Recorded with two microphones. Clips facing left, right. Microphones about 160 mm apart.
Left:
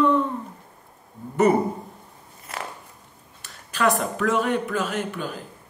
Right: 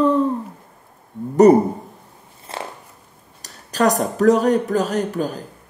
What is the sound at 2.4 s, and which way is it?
Biting, 30° right (ahead or behind).